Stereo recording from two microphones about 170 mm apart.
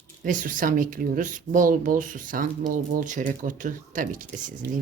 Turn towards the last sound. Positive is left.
turn(degrees=-50)  # may be behind; listen again after turning